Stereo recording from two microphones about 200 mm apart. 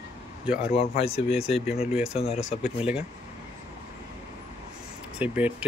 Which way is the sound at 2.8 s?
5° right (ahead or behind).